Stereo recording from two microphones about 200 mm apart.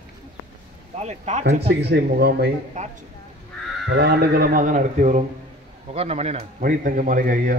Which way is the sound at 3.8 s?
55° right (ahead or behind).